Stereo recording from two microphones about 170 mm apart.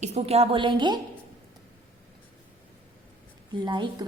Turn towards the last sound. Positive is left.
turn(degrees=-25)  # may be behind; listen again after turning